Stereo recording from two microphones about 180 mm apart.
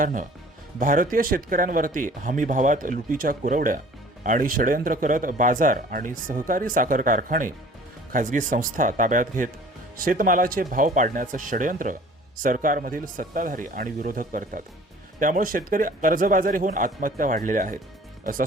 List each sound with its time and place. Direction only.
0.0 s speech: 45° right (ahead or behind)